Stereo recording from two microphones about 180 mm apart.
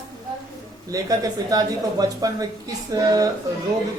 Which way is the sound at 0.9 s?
20° right (ahead or behind).